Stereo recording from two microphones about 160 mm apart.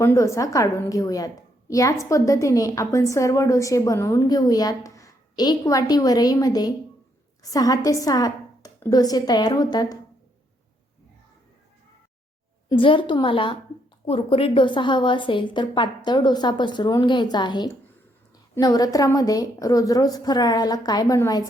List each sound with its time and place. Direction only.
0.0 s a woman's voice: 15° left (ahead or behind)
12.7 s a woman's voice: 30° left (ahead or behind)